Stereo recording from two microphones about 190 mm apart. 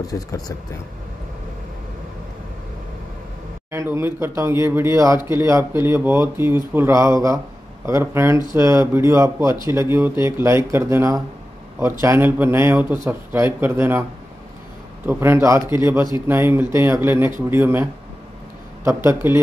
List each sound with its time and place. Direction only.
0.0 s speech: 20° left (ahead or behind)
3.7 s speech: 15° right (ahead or behind)
15.0 s speech: 10° right (ahead or behind)
18.9 s speech: 15° right (ahead or behind)